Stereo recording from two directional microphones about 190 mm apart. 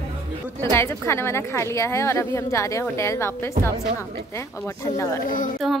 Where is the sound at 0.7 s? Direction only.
15° left (ahead or behind).